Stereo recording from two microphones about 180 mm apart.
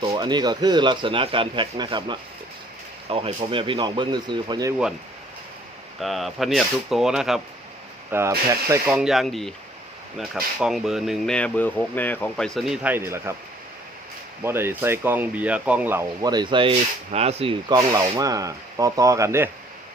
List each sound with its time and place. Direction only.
0.0 s a man's voice: 25° right (ahead or behind)
6.0 s speech: centre (ahead or behind)
14.4 s speech: 15° right (ahead or behind); by 17.7 s 30° right (ahead or behind)
18.2 s a man's voice: 20° right (ahead or behind)